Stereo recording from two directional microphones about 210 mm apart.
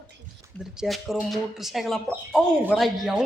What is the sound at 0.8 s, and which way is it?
Speech, centre (ahead or behind).